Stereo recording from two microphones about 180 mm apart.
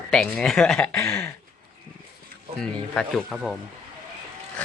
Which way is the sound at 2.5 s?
5° left (ahead or behind).